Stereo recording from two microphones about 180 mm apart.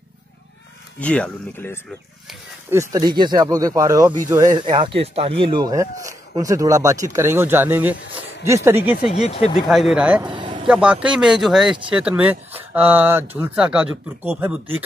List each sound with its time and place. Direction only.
0.9 s speech: 5° left (ahead or behind)
2.7 s speech: 20° right (ahead or behind)
9.1 s speech: 35° left (ahead or behind)
9.7 s speech: centre (ahead or behind)
10.2 s vehicle: 25° right (ahead or behind)
10.7 s speech: 5° right (ahead or behind)